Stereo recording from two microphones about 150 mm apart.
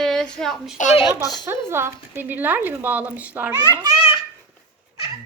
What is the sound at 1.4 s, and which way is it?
Speech, 15° right (ahead or behind).